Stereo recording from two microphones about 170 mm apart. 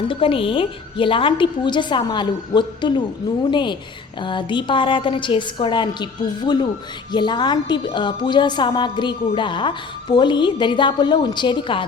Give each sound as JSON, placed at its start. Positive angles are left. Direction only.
{"t": 0.1, "sound": "a woman's voice", "side_deg": 30}